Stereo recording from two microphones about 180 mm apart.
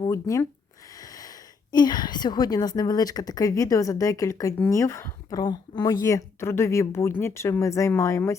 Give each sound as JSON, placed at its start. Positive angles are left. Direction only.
{"t": 0.0, "sound": "speech", "side_deg": 20}